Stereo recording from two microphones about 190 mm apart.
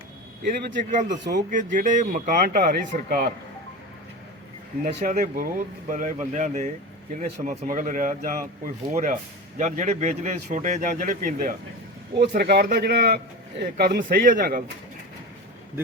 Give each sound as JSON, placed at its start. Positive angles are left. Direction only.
{"t": 0.9, "sound": "speech", "side_deg": -40}
{"t": 1.2, "sound": "a man's voice", "side_deg": -60}
{"t": 1.5, "sound": "speech", "side_deg": -45}
{"t": 4.8, "sound": "a man's voice", "side_deg": -45}